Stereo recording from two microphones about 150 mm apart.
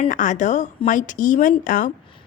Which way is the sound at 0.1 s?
55° left (ahead or behind).